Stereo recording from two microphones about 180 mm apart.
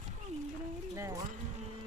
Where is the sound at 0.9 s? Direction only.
20° right (ahead or behind).